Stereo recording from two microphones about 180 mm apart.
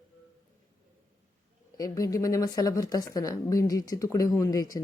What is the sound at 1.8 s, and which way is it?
A woman's voice, 20° left (ahead or behind).